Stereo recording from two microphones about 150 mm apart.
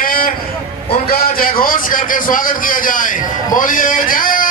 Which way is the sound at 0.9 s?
85° left.